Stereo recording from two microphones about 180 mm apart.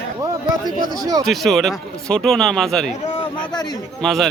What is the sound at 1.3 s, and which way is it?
Speech, centre (ahead or behind).